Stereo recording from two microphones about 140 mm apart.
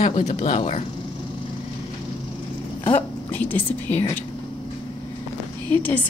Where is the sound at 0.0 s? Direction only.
50° left (ahead or behind).